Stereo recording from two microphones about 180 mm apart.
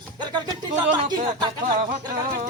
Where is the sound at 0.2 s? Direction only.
25° right (ahead or behind).